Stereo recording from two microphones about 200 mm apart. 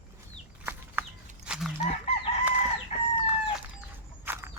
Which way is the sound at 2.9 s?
35° left (ahead or behind).